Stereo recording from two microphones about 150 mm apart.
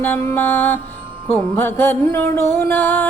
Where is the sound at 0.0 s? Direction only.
15° left (ahead or behind).